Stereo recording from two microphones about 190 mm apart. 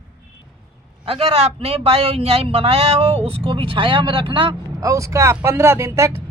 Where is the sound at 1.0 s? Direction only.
30° right (ahead or behind).